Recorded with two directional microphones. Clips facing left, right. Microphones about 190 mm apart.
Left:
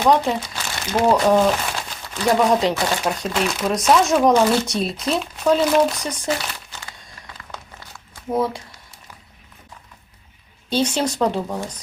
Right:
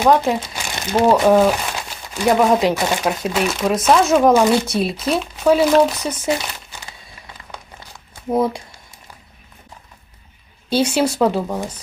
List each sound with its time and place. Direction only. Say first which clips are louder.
0.3 s crumpling: right 2 dB; 15° right (ahead or behind)
1.1 s a sound: right 3 dB; 10° right (ahead or behind)
2.5 s speech: right 2 dB; centre (ahead or behind)
2.7 s a woman's voice: right 2 dB; 15° right (ahead or behind)
3.1 s speech: right 2 dB; 5° right (ahead or behind)
7.5 s crumpling: right 1 dB; 15° right (ahead or behind)
10.7 s a woman's voice: right 3 dB; 10° right (ahead or behind)